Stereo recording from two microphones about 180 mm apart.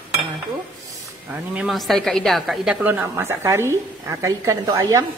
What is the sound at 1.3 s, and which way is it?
A woman's voice, 5° right (ahead or behind).